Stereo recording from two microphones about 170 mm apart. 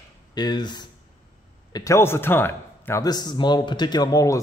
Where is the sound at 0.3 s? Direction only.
25° left (ahead or behind).